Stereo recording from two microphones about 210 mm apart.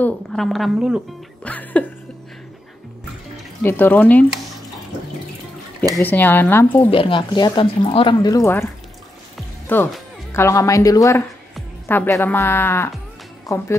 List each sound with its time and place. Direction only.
0.0 s a woman's voice: centre (ahead or behind)
1.4 s music: 5° left (ahead or behind)
3.6 s speech: 10° left (ahead or behind)
5.9 s speech: 10° left (ahead or behind)
6.9 s speech: 25° left (ahead or behind)
9.7 s speech: 10° left (ahead or behind)